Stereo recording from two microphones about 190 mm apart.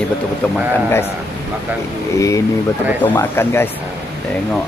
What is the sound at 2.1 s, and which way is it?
Speech, 15° left (ahead or behind).